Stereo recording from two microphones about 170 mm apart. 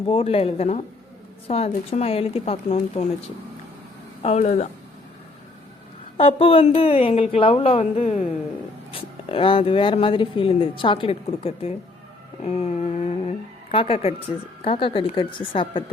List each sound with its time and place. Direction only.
0.1 s speech: 35° left (ahead or behind)
4.2 s speech: 40° left (ahead or behind)
6.1 s speech: 35° left (ahead or behind)